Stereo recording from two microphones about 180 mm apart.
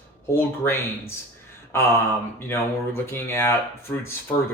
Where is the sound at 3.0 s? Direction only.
15° left (ahead or behind).